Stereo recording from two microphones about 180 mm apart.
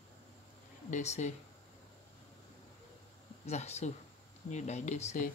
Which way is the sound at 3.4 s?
35° left (ahead or behind).